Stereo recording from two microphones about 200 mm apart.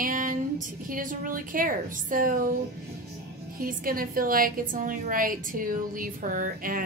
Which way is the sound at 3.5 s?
45° right (ahead or behind).